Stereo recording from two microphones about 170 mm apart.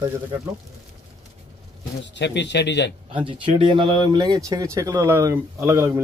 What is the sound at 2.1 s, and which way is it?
Speech, 90° left.